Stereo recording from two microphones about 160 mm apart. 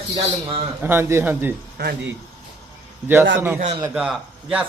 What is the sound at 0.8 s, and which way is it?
Speech, 15° right (ahead or behind).